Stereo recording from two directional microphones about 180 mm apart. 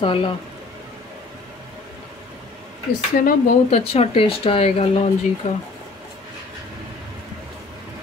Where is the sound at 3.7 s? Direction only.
35° left (ahead or behind).